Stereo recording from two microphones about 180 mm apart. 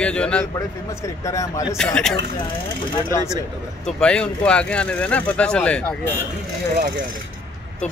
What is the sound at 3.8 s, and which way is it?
Speech, 5° left (ahead or behind).